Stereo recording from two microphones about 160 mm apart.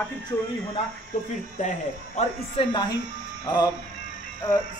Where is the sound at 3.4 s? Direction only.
25° left (ahead or behind).